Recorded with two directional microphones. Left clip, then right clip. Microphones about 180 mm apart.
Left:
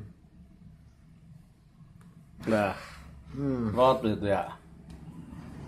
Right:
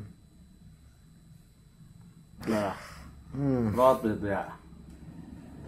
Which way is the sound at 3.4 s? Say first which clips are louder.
Right 2 dB; 20° right (ahead or behind).